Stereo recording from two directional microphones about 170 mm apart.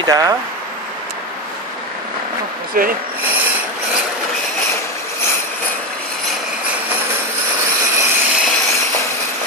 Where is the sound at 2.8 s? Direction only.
55° right (ahead or behind).